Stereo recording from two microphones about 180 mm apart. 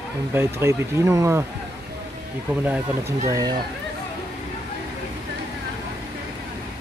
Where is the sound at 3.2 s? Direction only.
20° right (ahead or behind).